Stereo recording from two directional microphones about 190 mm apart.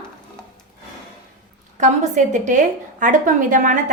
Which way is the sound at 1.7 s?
40° right (ahead or behind).